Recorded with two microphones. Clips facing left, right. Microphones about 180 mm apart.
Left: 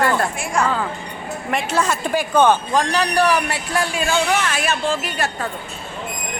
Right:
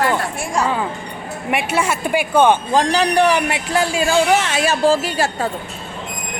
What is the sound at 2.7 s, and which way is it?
Speech, 25° right (ahead or behind).